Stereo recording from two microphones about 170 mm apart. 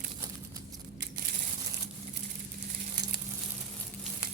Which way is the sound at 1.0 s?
65° right (ahead or behind).